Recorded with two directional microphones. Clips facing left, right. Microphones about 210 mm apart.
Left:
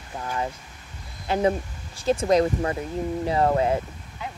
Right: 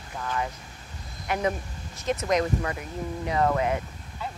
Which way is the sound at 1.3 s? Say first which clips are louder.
Left 5 dB; 30° left (ahead or behind).